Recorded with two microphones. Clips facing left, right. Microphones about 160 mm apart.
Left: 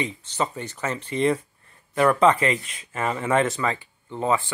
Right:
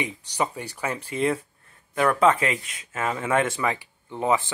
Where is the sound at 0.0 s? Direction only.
15° right (ahead or behind).